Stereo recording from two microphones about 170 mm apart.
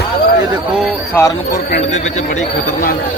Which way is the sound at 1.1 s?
15° left (ahead or behind).